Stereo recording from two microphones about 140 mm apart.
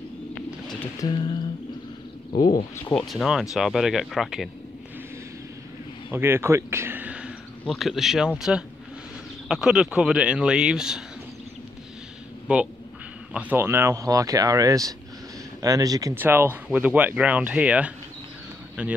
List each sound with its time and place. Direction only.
1.0 s humming: 30° left (ahead or behind)
2.3 s speech: 90° left
2.9 s speech: 5° left (ahead or behind)
6.0 s a sound: 15° right (ahead or behind)
7.6 s speech: centre (ahead or behind)
13.3 s speech: 10° right (ahead or behind)
16.2 s speech: 15° right (ahead or behind)